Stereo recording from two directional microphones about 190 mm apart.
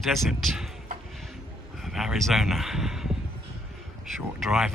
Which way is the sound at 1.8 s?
Centre (ahead or behind).